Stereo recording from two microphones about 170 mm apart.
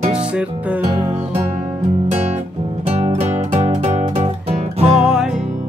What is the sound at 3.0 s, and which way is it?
Music, 40° right (ahead or behind).